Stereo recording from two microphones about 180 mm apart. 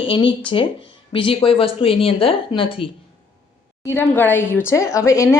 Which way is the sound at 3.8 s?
10° left (ahead or behind).